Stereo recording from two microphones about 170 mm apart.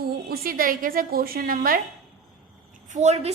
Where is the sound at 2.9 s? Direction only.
40° right (ahead or behind).